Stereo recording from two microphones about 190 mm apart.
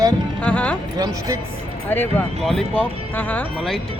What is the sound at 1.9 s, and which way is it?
Speech, 10° left (ahead or behind).